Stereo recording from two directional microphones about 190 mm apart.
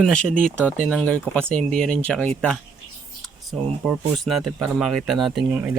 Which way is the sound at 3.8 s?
Centre (ahead or behind).